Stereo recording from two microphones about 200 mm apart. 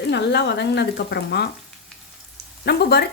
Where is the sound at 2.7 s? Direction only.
55° left (ahead or behind).